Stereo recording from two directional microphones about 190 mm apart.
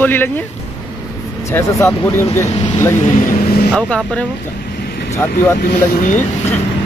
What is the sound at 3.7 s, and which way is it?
Speech, 5° left (ahead or behind).